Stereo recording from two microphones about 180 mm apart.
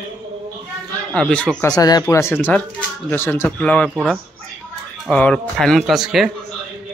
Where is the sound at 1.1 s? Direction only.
5° left (ahead or behind).